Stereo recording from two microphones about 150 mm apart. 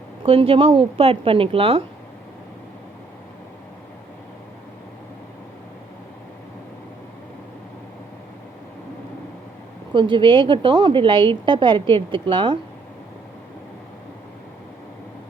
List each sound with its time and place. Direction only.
0.2 s a woman's voice: 40° right (ahead or behind)
9.9 s a woman's voice: 35° right (ahead or behind)